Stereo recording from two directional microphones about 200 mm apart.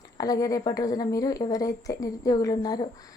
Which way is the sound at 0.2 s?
20° left (ahead or behind).